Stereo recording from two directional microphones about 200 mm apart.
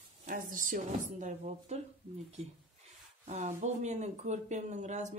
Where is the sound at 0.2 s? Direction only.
40° right (ahead or behind).